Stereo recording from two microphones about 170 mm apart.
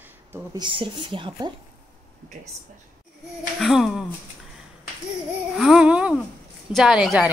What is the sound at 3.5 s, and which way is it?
Speech, centre (ahead or behind).